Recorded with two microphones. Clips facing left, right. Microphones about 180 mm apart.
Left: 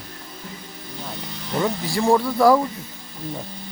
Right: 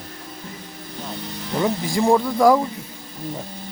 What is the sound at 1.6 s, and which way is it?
Speech, 15° right (ahead or behind).